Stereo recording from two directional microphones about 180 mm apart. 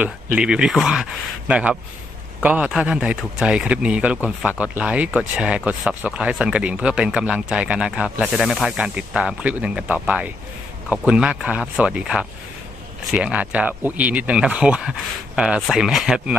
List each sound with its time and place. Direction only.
0.0 s a man's voice: 5° right (ahead or behind)